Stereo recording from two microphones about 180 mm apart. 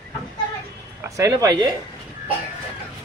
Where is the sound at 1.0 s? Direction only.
20° right (ahead or behind).